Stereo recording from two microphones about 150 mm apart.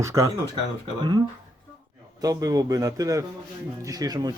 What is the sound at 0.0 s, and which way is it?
Speech, 20° right (ahead or behind).